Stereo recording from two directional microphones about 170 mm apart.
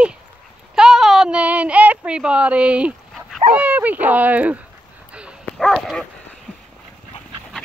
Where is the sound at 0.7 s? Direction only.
5° right (ahead or behind).